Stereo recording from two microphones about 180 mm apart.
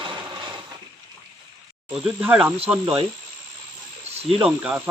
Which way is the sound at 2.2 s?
10° right (ahead or behind).